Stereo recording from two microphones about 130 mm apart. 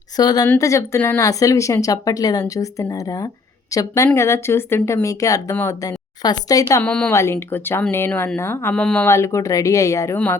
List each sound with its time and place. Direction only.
0.2 s speech: 30° left (ahead or behind)
0.4 s speech: 20° left (ahead or behind)
6.8 s speech: 10° left (ahead or behind)
7.1 s speech: 20° left (ahead or behind)
8.7 s speech: 5° left (ahead or behind)
9.0 s speech: 20° left (ahead or behind)